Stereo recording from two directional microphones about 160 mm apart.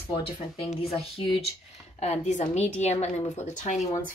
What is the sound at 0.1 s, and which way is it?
A woman's voice, 40° left (ahead or behind).